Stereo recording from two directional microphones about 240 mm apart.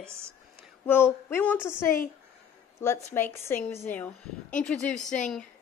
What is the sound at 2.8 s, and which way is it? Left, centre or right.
A woman's voice, centre.